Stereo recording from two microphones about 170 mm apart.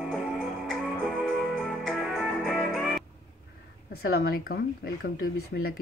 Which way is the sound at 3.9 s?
70° left (ahead or behind).